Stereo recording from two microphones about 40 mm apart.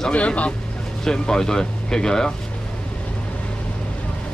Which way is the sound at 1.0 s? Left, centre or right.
Centre.